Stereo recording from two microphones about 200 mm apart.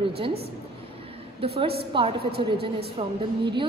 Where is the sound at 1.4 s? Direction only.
30° right (ahead or behind).